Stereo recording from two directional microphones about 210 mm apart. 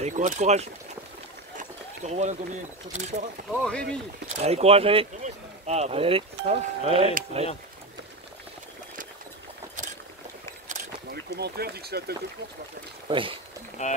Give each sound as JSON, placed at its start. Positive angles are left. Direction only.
{"t": 0.0, "sound": "speech", "side_deg": -35}
{"t": 3.6, "sound": "speech", "side_deg": 5}
{"t": 4.4, "sound": "speech", "side_deg": -30}
{"t": 10.7, "sound": "a sound", "side_deg": -50}
{"t": 13.1, "sound": "speech", "side_deg": -25}
{"t": 13.8, "sound": "speech", "side_deg": 30}